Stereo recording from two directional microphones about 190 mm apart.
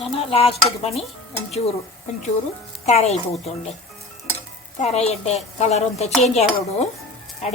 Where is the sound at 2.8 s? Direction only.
35° left (ahead or behind).